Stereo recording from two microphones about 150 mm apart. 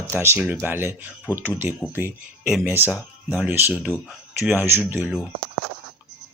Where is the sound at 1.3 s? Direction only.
25° left (ahead or behind).